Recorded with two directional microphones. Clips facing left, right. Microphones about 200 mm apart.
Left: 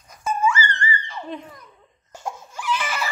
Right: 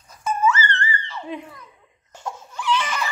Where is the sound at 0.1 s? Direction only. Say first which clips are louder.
Right 1 dB; 10° left (ahead or behind).